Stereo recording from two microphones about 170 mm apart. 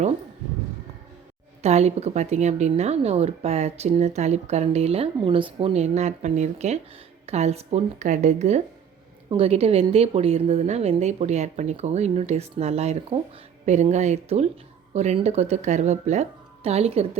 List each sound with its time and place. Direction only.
1.6 s a woman's voice: 40° right (ahead or behind)